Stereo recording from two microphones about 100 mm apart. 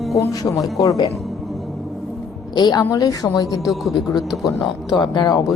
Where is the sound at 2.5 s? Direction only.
45° left (ahead or behind).